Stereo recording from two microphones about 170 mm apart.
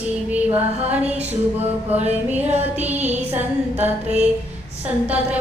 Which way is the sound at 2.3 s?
10° right (ahead or behind).